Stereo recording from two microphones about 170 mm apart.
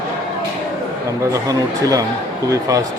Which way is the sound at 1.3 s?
20° right (ahead or behind).